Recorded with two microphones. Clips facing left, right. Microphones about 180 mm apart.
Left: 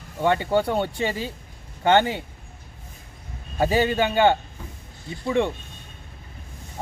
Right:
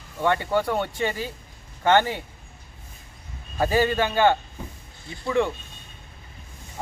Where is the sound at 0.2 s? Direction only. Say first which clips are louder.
Left 2 dB; 20° left (ahead or behind).